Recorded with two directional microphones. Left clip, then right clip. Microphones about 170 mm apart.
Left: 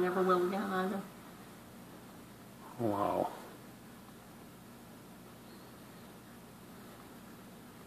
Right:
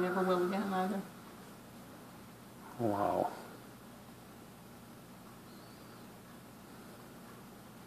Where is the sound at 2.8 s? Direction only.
5° right (ahead or behind).